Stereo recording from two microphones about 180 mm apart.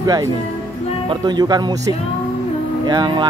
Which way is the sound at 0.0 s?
20° right (ahead or behind).